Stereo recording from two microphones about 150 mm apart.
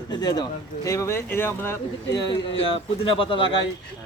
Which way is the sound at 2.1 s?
30° left (ahead or behind).